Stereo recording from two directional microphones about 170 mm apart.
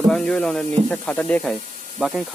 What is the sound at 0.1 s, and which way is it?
Speech, 5° left (ahead or behind).